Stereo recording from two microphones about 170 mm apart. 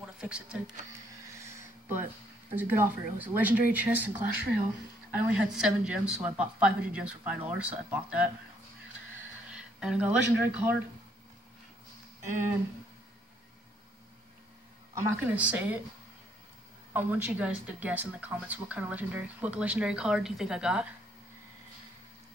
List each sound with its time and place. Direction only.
0.0 s speech: 5° right (ahead or behind)
2.5 s speech: 10° right (ahead or behind)
9.5 s speech: 5° right (ahead or behind)
15.0 s speech: 10° right (ahead or behind)
16.9 s speech: 10° right (ahead or behind)